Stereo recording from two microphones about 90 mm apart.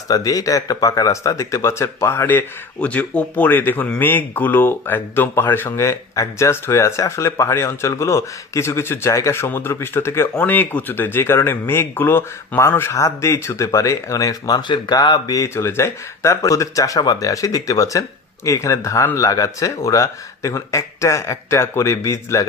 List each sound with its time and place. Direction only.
0.1 s speech: 40° left (ahead or behind)